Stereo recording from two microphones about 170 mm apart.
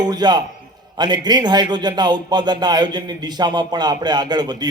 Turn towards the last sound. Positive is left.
turn(degrees=-25)  # may be behind; listen again after turning